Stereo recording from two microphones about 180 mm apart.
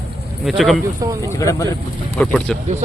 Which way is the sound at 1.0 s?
20° right (ahead or behind).